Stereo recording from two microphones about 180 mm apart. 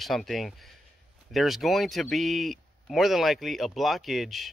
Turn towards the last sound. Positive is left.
turn(degrees=0)  # may be behind; listen again after turning